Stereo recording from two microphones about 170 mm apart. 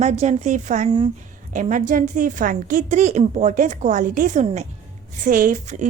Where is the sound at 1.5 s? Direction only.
45° right (ahead or behind).